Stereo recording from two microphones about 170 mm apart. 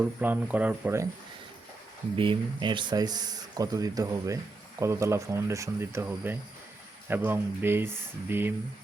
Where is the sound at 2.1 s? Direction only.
30° right (ahead or behind).